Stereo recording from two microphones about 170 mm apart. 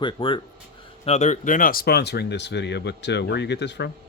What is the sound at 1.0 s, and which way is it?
Speech, 40° left (ahead or behind).